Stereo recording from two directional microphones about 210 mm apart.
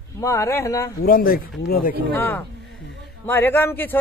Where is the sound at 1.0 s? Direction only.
45° left (ahead or behind).